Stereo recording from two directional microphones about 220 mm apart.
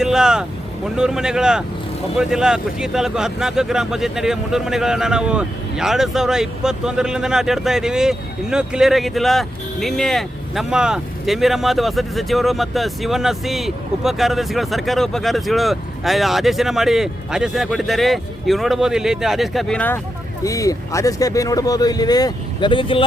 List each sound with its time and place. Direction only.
0.0 s vehicle: 5° right (ahead or behind)
0.9 s speech: 5° right (ahead or behind); by 23.0 s 25° left (ahead or behind)